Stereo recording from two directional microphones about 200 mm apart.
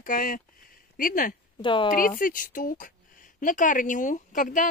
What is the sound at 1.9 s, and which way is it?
A woman's voice, 45° left (ahead or behind).